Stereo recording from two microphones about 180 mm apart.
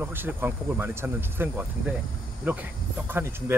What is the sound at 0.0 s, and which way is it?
Speech, 10° right (ahead or behind).